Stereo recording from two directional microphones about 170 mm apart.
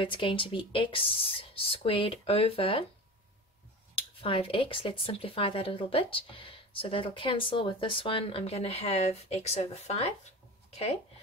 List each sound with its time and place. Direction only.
0.0 s speech: 30° left (ahead or behind)
3.9 s speech: 30° left (ahead or behind)